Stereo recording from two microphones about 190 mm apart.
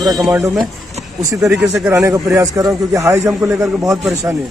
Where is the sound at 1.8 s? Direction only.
15° right (ahead or behind).